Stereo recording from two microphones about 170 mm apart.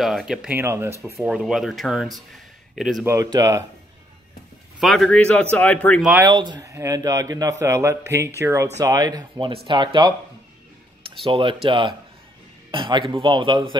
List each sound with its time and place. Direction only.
0.0 s speech: centre (ahead or behind)
0.6 s speech: 15° right (ahead or behind)
1.1 s speech: 5° right (ahead or behind)
3.1 s a man's voice: 20° right (ahead or behind)
4.7 s speech: centre (ahead or behind)
6.2 s a man's voice: 25° right (ahead or behind)